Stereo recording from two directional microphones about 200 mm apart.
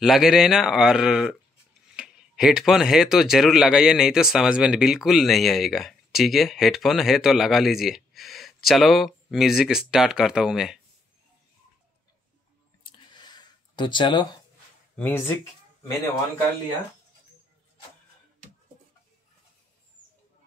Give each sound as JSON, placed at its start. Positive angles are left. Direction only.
{"t": 0.0, "sound": "speech", "side_deg": 0}
{"t": 12.8, "sound": "a sound", "side_deg": 20}
{"t": 15.0, "sound": "speech", "side_deg": 10}